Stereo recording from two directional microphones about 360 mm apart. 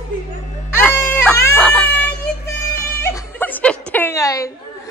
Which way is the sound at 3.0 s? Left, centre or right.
Centre.